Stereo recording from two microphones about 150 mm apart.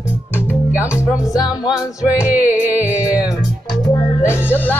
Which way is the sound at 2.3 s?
10° right (ahead or behind).